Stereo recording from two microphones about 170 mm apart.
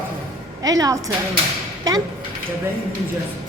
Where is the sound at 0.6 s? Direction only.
20° right (ahead or behind).